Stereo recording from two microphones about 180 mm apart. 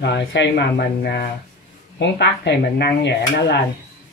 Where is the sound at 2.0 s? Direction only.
70° left (ahead or behind).